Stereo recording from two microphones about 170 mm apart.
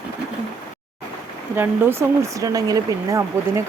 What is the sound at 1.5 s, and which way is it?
Speech, 15° right (ahead or behind).